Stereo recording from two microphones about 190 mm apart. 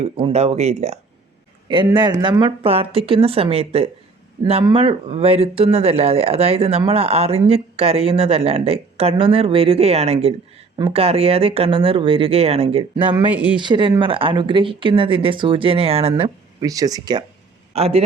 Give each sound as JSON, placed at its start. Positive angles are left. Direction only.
{"t": 0.0, "sound": "speech", "side_deg": -30}
{"t": 1.6, "sound": "speech", "side_deg": -25}
{"t": 13.0, "sound": "speech", "side_deg": -10}
{"t": 13.6, "sound": "speech", "side_deg": -25}
{"t": 16.6, "sound": "speech", "side_deg": -20}
{"t": 17.7, "sound": "speech", "side_deg": -30}